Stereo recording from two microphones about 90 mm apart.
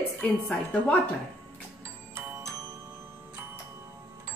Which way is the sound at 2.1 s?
35° right (ahead or behind).